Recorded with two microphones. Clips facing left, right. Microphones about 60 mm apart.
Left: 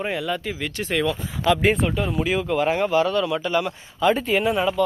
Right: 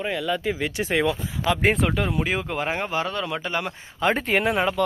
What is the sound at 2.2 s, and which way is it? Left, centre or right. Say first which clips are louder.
Speech: left 5 dB; right.